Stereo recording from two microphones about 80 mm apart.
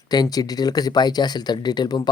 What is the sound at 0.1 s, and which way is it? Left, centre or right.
Speech, left.